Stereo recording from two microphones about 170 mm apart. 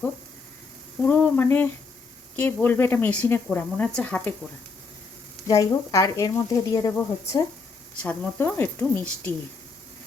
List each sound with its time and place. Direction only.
1.0 s speech: 10° left (ahead or behind)
5.5 s speech: 20° left (ahead or behind)